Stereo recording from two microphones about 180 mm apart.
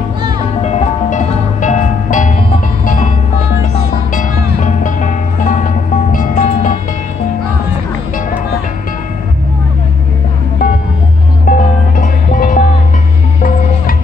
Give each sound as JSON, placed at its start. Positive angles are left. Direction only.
{"t": 0.6, "sound": "music", "side_deg": 35}
{"t": 4.1, "sound": "music", "side_deg": 45}
{"t": 11.4, "sound": "music", "side_deg": 50}